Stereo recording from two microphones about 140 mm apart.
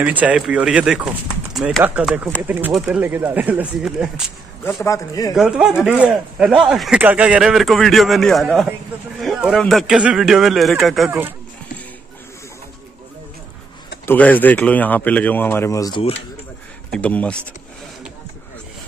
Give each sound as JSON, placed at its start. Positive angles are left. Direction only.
{"t": 0.0, "sound": "speech", "side_deg": -10}
{"t": 4.8, "sound": "a man's voice", "side_deg": 25}
{"t": 5.3, "sound": "speech", "side_deg": -5}
{"t": 11.1, "sound": "speech", "side_deg": -15}
{"t": 14.0, "sound": "speech", "side_deg": 10}
{"t": 15.9, "sound": "speech", "side_deg": 45}
{"t": 16.9, "sound": "speech", "side_deg": 10}